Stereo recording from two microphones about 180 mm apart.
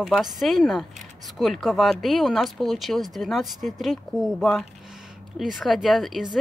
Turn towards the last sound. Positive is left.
turn(degrees=0)  # may be behind; listen again after turning